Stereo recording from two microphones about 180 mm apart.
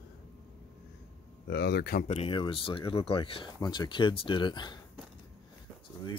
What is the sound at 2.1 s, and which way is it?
Speech, 25° left (ahead or behind).